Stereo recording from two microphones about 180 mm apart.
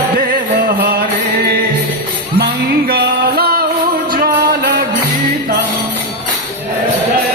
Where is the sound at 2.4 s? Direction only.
60° right (ahead or behind).